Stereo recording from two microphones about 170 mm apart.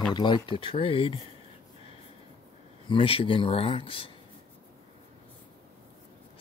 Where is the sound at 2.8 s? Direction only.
30° left (ahead or behind).